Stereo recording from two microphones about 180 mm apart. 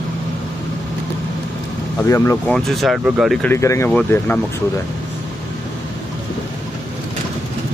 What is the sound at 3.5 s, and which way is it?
Speech, 15° left (ahead or behind).